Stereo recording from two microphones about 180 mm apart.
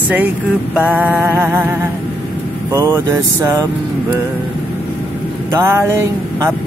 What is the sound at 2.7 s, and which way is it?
Mantra, 20° right (ahead or behind).